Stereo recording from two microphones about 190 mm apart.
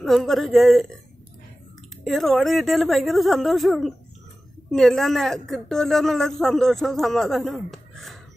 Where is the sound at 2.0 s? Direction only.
Centre (ahead or behind).